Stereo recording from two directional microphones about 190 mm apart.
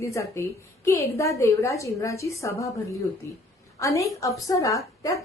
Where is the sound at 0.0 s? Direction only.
15° left (ahead or behind).